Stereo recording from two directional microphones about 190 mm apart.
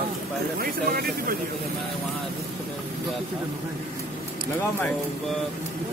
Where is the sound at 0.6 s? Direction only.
50° right (ahead or behind).